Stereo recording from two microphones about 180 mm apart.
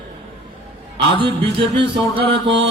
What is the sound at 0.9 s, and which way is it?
A man's voice, 30° right (ahead or behind).